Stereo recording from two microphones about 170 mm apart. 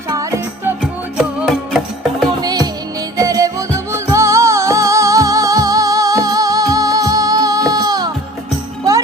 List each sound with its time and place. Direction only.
0.1 s music: 20° right (ahead or behind)
1.2 s music: 5° right (ahead or behind)
2.4 s music: 25° right (ahead or behind)